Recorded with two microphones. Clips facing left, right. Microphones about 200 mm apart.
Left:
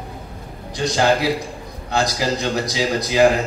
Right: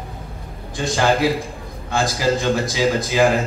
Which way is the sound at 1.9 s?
50° right (ahead or behind).